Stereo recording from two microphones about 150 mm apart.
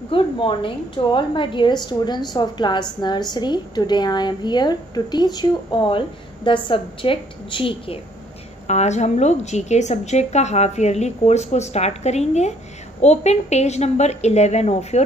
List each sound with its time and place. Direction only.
0.1 s a woman's voice: 35° left (ahead or behind)
8.6 s a woman's voice: 50° left (ahead or behind)